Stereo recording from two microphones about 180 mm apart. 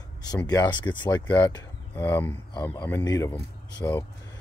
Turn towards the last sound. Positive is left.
turn(degrees=20)  # may be behind; listen again after turning